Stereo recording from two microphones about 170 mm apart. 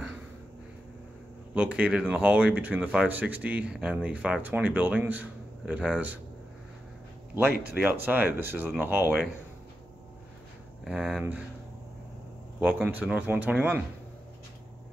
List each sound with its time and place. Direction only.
1.5 s speech: 10° right (ahead or behind)
7.7 s speech: 10° right (ahead or behind)
10.8 s speech: 5° right (ahead or behind)
12.5 s speech: 5° right (ahead or behind)